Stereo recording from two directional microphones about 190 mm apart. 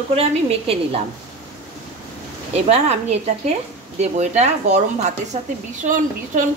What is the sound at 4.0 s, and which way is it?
Speech, 35° right (ahead or behind).